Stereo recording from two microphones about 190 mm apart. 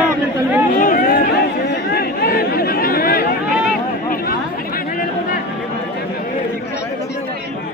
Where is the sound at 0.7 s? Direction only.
45° left (ahead or behind).